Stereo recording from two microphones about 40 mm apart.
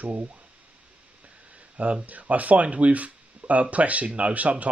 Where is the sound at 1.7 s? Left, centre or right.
Right.